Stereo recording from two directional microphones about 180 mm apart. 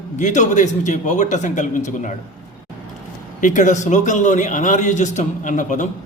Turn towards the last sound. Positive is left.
turn(degrees=45)  # may be behind; listen again after turning